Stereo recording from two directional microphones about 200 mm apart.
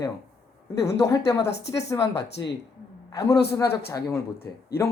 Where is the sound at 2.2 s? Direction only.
60° left (ahead or behind).